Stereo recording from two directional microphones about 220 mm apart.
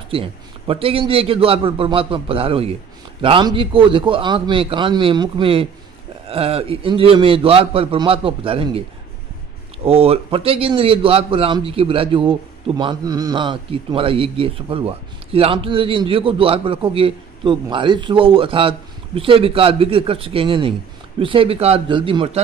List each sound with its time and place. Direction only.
0.1 s a man's voice: 25° right (ahead or behind)
9.8 s a man's voice: 25° right (ahead or behind)